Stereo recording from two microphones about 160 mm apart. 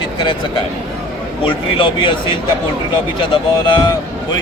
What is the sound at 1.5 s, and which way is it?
Speech, 30° left (ahead or behind).